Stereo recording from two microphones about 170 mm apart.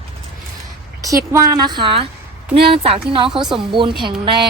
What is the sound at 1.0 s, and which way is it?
A woman's voice, 20° right (ahead or behind).